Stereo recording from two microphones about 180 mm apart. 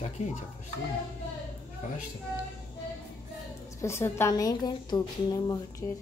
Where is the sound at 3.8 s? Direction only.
15° left (ahead or behind).